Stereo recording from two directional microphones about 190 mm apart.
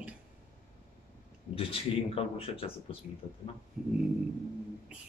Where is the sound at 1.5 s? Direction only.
30° left (ahead or behind).